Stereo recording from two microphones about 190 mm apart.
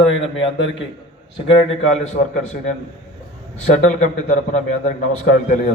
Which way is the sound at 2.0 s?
40° left (ahead or behind).